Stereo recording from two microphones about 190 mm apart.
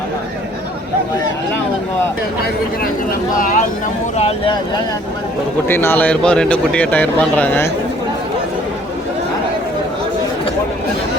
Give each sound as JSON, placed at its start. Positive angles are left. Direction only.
{"t": 3.3, "sound": "speech", "side_deg": 45}
{"t": 4.2, "sound": "speech", "side_deg": 30}
{"t": 5.6, "sound": "a man's voice", "side_deg": 10}